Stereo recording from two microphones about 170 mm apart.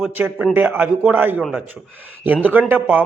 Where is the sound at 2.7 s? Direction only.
10° right (ahead or behind).